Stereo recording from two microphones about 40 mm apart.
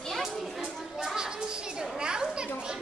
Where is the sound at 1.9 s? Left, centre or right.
Right.